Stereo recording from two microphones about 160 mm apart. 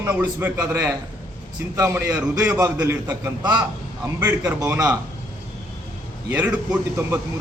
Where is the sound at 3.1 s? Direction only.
25° right (ahead or behind).